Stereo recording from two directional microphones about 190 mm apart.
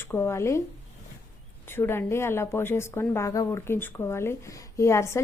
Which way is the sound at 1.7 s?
10° left (ahead or behind).